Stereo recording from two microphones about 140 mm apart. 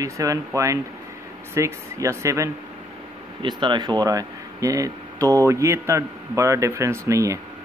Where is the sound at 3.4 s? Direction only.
35° right (ahead or behind).